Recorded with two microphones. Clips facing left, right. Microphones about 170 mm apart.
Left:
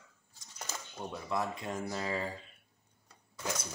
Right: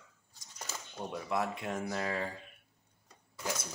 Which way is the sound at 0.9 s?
5° right (ahead or behind).